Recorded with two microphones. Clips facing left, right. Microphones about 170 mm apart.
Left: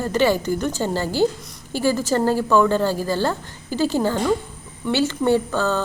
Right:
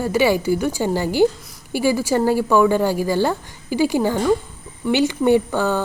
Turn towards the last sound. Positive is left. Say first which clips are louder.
# right 2 dB
turn(degrees=-15)  # may be behind; listen again after turning